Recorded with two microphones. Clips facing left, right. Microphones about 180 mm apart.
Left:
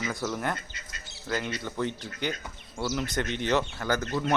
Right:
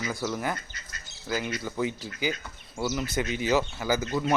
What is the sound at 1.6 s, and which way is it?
Speech, 5° right (ahead or behind).